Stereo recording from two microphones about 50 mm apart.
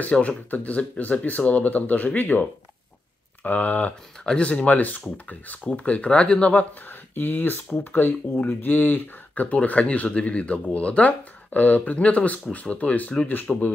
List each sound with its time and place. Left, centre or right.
0.0 s speech: left
3.4 s speech: left
6.9 s speech: left
13.5 s speech: centre